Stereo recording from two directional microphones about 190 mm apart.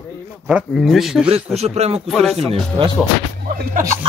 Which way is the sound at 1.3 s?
35° right (ahead or behind).